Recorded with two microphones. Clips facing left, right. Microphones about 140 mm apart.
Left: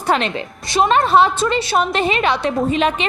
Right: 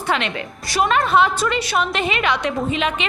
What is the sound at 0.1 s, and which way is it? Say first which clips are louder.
Speech: left 4 dB; 35° left (ahead or behind).